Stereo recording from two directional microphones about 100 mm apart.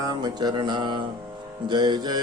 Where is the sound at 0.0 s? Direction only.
40° right (ahead or behind).